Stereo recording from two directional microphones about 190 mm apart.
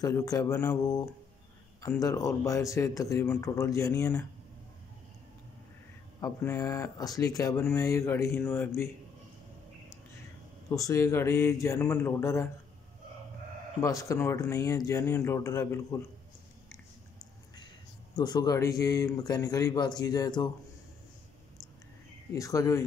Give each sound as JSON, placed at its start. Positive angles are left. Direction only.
{"t": 0.0, "sound": "speech", "side_deg": 20}
{"t": 6.2, "sound": "speech", "side_deg": 15}
{"t": 10.7, "sound": "speech", "side_deg": 15}
{"t": 13.7, "sound": "speech", "side_deg": 15}
{"t": 18.1, "sound": "speech", "side_deg": 20}
{"t": 22.3, "sound": "speech", "side_deg": 15}